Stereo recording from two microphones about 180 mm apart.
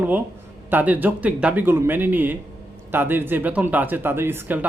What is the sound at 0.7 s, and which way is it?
Speech, 10° right (ahead or behind).